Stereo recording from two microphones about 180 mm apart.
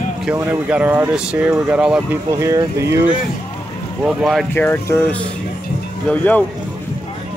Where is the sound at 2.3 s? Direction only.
15° right (ahead or behind).